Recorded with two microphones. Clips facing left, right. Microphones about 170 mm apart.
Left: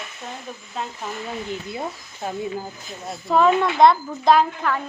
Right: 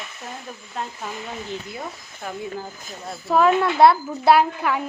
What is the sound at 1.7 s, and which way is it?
Speech, 25° left (ahead or behind).